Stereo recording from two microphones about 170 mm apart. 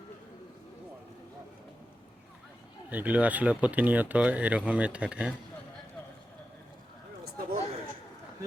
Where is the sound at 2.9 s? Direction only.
10° right (ahead or behind).